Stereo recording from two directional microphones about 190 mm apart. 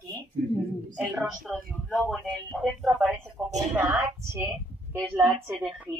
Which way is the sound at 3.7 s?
10° right (ahead or behind).